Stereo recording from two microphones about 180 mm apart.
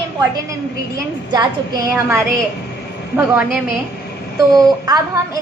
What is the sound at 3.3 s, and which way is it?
Speech, 10° right (ahead or behind).